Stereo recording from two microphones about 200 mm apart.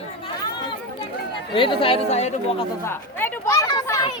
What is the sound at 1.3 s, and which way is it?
Speech, 25° left (ahead or behind).